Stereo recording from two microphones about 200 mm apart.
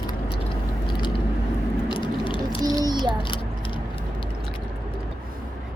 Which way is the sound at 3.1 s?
25° left (ahead or behind).